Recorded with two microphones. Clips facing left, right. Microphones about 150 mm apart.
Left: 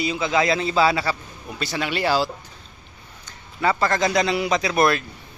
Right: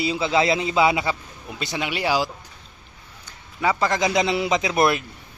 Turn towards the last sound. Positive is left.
turn(degrees=-20)  # may be behind; listen again after turning